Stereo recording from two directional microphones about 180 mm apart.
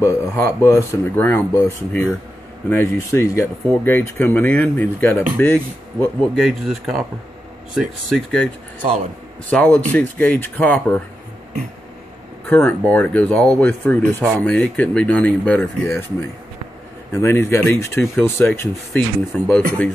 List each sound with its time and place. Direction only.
0.0 s speech: 15° left (ahead or behind)
6.3 s speech: centre (ahead or behind)
8.8 s a man's voice: 35° right (ahead or behind)
9.5 s speech: 5° left (ahead or behind)
12.4 s speech: 10° left (ahead or behind)